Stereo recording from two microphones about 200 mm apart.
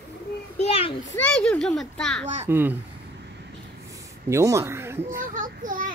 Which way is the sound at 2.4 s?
10° right (ahead or behind).